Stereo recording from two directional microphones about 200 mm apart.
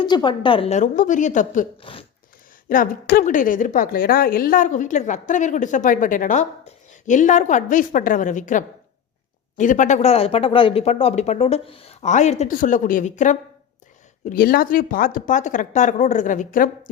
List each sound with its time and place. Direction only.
0.0 s a woman's voice: 20° left (ahead or behind); by 1.6 s 40° left (ahead or behind)
1.8 s speech: 25° left (ahead or behind)
2.6 s a woman's voice: 45° left (ahead or behind)